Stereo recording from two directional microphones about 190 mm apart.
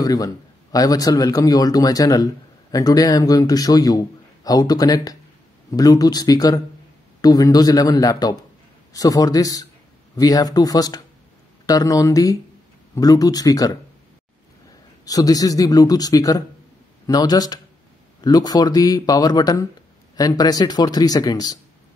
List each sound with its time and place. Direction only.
0.0 s a man's voice: 20° left (ahead or behind)
15.0 s a man's voice: 20° left (ahead or behind)